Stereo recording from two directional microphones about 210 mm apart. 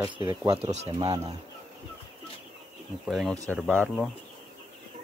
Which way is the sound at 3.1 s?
Centre (ahead or behind).